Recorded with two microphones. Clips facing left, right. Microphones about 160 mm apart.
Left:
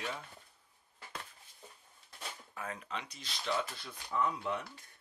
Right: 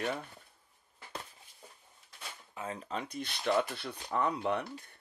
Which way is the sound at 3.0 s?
55° right (ahead or behind).